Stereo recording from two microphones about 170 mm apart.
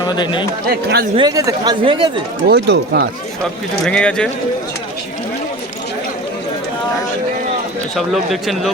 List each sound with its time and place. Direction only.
0.0 s speech: 25° left (ahead or behind)
0.7 s speech: 65° right (ahead or behind)
1.1 s speech: 25° right (ahead or behind)
1.8 s speech: 30° right (ahead or behind)
2.5 s speech: 80° right
3.8 s speech: 5° left (ahead or behind)
7.9 s speech: centre (ahead or behind)